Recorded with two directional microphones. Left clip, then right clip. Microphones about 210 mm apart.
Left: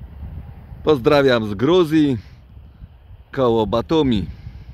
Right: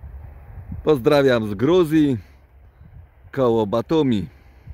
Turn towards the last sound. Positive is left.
turn(degrees=0)  # may be behind; listen again after turning